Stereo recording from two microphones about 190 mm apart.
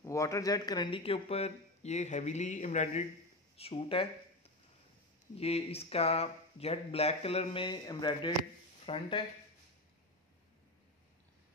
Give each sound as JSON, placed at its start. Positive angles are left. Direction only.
{"t": 0.0, "sound": "speech", "side_deg": 15}
{"t": 5.3, "sound": "speech", "side_deg": 30}